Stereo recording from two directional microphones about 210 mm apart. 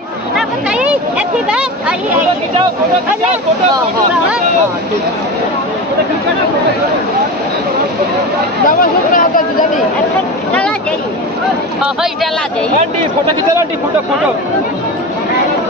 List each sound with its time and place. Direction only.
0.7 s a sound: 5° right (ahead or behind)
1.5 s speech: 5° right (ahead or behind)
8.6 s speech: 40° left (ahead or behind)